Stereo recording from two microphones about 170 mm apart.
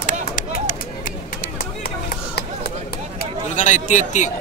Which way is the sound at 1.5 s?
65° left (ahead or behind).